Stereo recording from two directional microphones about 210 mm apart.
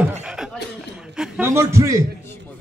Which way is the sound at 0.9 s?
5° right (ahead or behind).